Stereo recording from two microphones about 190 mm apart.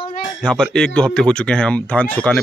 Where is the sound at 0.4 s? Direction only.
5° left (ahead or behind).